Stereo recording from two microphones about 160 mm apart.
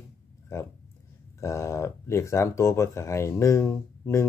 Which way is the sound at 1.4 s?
20° left (ahead or behind).